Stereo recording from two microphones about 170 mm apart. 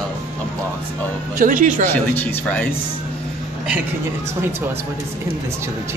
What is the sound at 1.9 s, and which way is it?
Speech, 10° left (ahead or behind).